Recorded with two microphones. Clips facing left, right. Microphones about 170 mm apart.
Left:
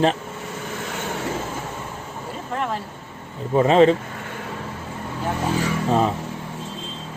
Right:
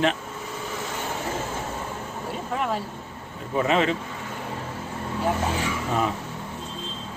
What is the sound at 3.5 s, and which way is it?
Speech, 35° left (ahead or behind).